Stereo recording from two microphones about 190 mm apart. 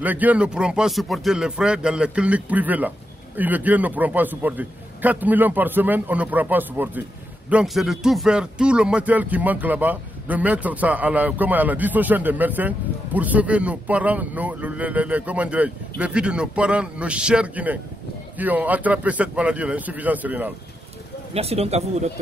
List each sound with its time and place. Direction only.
0.0 s a man's voice: 10° right (ahead or behind)
21.3 s speech: 30° right (ahead or behind)